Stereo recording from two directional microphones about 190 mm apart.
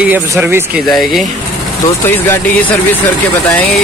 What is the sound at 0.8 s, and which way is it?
Speech, centre (ahead or behind).